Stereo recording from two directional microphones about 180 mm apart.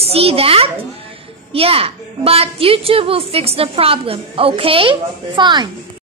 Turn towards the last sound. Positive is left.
turn(degrees=-25)  # may be behind; listen again after turning